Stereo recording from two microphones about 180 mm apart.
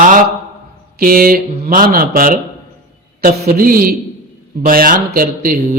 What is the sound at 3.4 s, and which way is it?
Speech, 55° right (ahead or behind).